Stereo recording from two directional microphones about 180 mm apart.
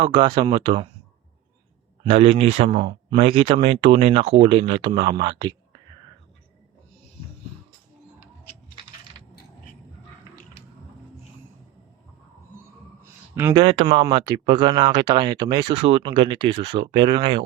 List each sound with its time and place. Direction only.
0.0 s speech: 25° right (ahead or behind)
2.0 s speech: 30° right (ahead or behind)
13.3 s speech: 10° right (ahead or behind)
13.6 s speech: 35° right (ahead or behind)